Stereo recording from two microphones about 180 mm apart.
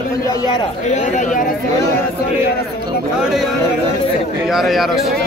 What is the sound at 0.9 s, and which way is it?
Speech, 45° left (ahead or behind).